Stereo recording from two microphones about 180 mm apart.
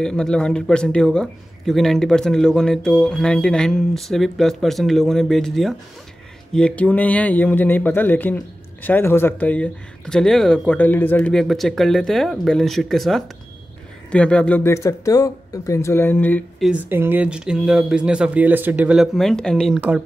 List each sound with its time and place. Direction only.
0.0 s speech: 5° left (ahead or behind)
16.6 s speech: 10° right (ahead or behind)